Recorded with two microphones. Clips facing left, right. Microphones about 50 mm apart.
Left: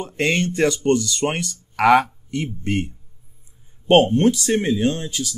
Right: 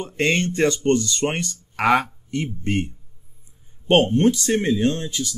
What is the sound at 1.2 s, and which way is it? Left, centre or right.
Speech, centre.